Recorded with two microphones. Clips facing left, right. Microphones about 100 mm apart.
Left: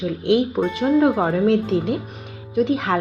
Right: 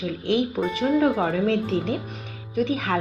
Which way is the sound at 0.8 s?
30° left (ahead or behind).